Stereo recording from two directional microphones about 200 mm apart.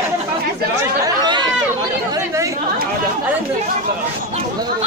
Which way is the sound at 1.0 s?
20° right (ahead or behind).